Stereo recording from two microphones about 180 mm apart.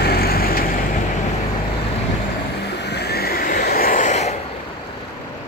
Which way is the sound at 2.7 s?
70° left (ahead or behind).